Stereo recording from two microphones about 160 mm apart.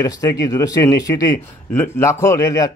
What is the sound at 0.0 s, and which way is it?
A man's voice, 20° left (ahead or behind).